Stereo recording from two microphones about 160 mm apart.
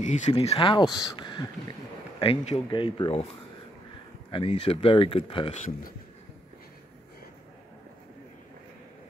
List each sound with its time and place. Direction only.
0.0 s speech: 50° left (ahead or behind); by 1.5 s 30° left (ahead or behind)
2.1 s speech: 40° left (ahead or behind)
4.3 s speech: 35° left (ahead or behind)